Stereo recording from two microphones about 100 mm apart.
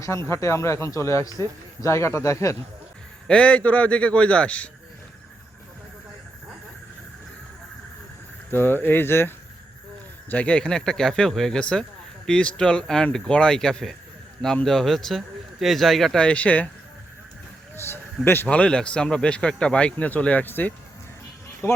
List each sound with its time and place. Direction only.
0.0 s speech: 30° left (ahead or behind)
3.2 s speech: 10° left (ahead or behind)
8.4 s speech: 20° left (ahead or behind)
17.7 s a sound: 25° left (ahead or behind)
18.4 s speech: 10° left (ahead or behind)
21.6 s speech: 30° left (ahead or behind)